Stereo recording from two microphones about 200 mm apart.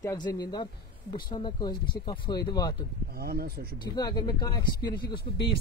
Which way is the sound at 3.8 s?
20° left (ahead or behind).